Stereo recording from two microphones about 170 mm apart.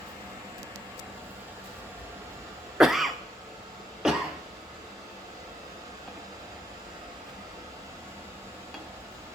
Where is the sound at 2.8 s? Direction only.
Centre (ahead or behind).